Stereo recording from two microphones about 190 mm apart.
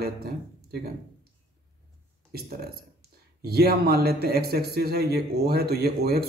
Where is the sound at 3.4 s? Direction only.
55° right (ahead or behind).